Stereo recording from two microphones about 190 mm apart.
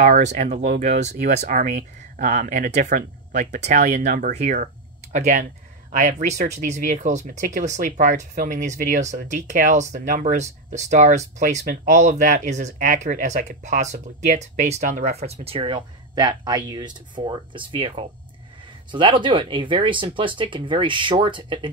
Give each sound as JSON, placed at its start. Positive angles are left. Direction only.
{"t": 0.0, "sound": "speech", "side_deg": -40}